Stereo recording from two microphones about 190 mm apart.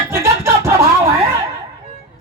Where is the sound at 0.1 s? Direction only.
15° right (ahead or behind).